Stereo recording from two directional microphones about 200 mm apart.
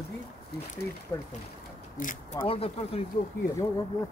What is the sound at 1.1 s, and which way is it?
Speech, 15° left (ahead or behind).